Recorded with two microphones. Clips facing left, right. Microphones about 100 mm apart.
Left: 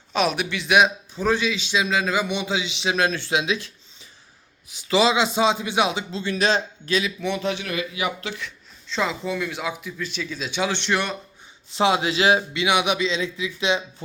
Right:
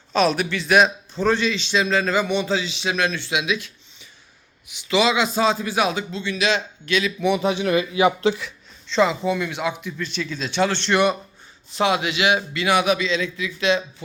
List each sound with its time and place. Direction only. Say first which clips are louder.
0.1 s a man's voice: right 3 dB; 10° left (ahead or behind); by 3.6 s 30° left (ahead or behind)
4.9 s speech: even; 30° left (ahead or behind)
6.2 s a man's voice: left 1 dB; 40° left (ahead or behind)
7.2 s speech: right 5 dB; 10° right (ahead or behind)
7.7 s speech: right 8 dB; 30° right (ahead or behind)
8.9 s a man's voice: right 6 dB; centre (ahead or behind)
11.8 s speech: left 1 dB; 25° left (ahead or behind)
12.4 s speech: right 2 dB; 20° left (ahead or behind)